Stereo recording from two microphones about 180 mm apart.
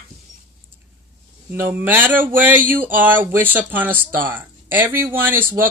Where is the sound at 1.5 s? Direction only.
10° right (ahead or behind).